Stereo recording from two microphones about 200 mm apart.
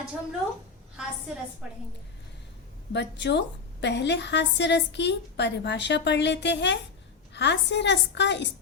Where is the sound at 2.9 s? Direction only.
60° left (ahead or behind).